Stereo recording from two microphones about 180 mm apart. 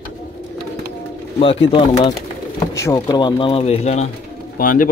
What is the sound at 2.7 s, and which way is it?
Speech, 15° left (ahead or behind).